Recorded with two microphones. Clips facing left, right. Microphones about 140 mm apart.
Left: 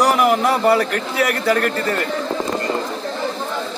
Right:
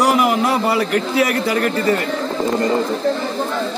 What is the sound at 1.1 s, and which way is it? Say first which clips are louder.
Speech: left 1 dB; 55° left (ahead or behind).